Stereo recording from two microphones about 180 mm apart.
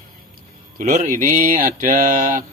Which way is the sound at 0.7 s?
50° right (ahead or behind).